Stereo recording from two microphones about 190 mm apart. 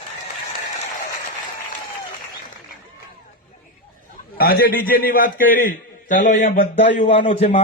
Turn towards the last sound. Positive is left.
turn(degrees=30)  # may be behind; listen again after turning